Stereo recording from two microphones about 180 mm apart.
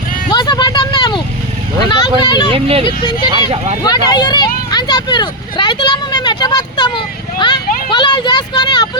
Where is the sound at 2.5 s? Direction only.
35° right (ahead or behind).